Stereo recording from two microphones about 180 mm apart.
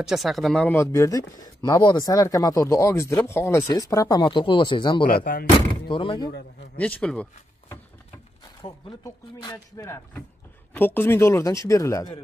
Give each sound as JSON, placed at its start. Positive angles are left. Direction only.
{"t": 0.0, "sound": "speech", "side_deg": 0}
{"t": 5.0, "sound": "speech", "side_deg": 55}
{"t": 5.9, "sound": "speech", "side_deg": 30}
{"t": 6.8, "sound": "speech", "side_deg": 5}
{"t": 8.6, "sound": "speech", "side_deg": 25}